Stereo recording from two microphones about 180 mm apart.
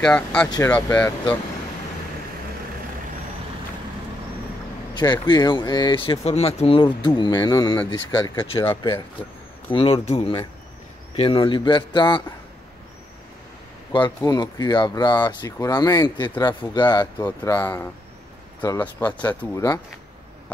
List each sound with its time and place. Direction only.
0.0 s speech: 5° left (ahead or behind)
4.9 s speech: 25° left (ahead or behind)
13.9 s speech: 20° left (ahead or behind)